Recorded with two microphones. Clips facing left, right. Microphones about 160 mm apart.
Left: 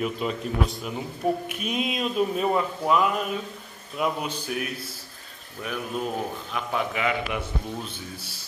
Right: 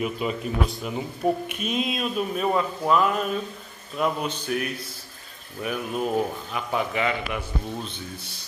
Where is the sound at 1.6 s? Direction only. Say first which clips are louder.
Right 1 dB; 10° left (ahead or behind).